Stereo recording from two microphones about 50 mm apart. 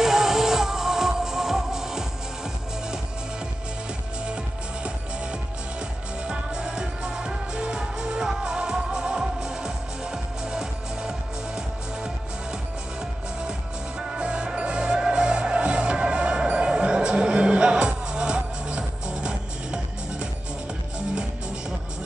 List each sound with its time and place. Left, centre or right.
0.0 s music: centre
6.2 s music: centre
14.1 s music: centre